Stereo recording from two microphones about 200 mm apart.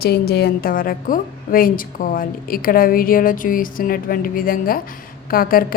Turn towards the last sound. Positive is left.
turn(degrees=45)  # may be behind; listen again after turning